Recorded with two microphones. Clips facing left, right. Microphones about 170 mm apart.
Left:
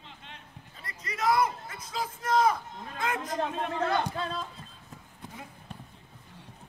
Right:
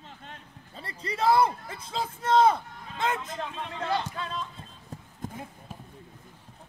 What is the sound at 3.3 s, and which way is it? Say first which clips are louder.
Speech: left 5 dB; 50° left (ahead or behind).